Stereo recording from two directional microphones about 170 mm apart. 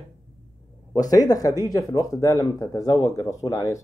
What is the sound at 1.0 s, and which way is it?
Speech, 20° left (ahead or behind).